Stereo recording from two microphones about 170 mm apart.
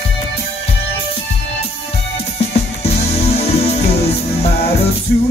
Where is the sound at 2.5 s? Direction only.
35° left (ahead or behind).